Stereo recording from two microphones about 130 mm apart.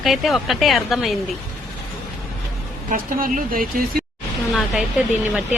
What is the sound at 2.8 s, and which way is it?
Speech, 90° right.